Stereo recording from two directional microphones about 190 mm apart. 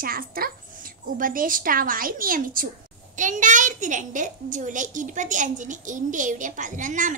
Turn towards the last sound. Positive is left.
turn(degrees=-40)  # may be behind; listen again after turning